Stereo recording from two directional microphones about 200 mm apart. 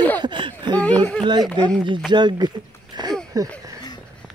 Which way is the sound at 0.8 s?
5° left (ahead or behind).